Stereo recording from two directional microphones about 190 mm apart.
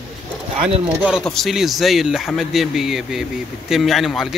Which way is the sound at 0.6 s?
30° right (ahead or behind).